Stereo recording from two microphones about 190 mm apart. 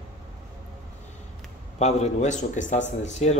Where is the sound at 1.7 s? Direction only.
35° left (ahead or behind).